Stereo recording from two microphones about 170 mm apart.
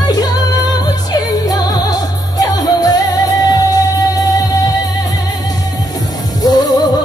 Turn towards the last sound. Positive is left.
turn(degrees=25)  # may be behind; listen again after turning